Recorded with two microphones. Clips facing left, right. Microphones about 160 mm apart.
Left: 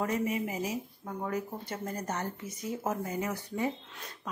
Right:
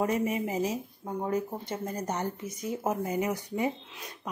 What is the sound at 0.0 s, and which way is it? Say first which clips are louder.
Speech: right 3 dB; 20° right (ahead or behind).